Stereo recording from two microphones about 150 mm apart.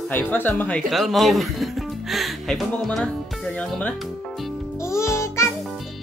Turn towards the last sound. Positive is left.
turn(degrees=20)  # may be behind; listen again after turning